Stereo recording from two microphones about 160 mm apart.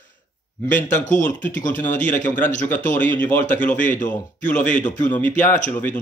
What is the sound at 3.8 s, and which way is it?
Speech, 55° left (ahead or behind).